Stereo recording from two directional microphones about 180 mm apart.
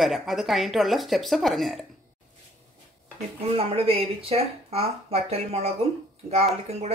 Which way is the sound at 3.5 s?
30° right (ahead or behind).